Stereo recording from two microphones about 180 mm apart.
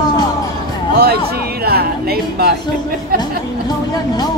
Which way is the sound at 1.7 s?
60° right (ahead or behind).